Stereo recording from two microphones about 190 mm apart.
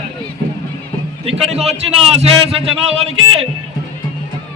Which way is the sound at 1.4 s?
30° right (ahead or behind).